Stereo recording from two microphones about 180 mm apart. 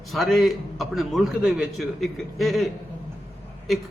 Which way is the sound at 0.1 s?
Centre (ahead or behind).